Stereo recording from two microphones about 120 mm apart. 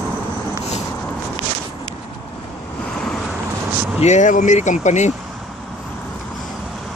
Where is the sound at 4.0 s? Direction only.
80° left.